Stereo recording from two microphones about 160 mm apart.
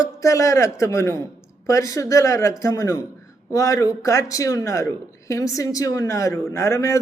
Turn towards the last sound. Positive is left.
turn(degrees=20)  # may be behind; listen again after turning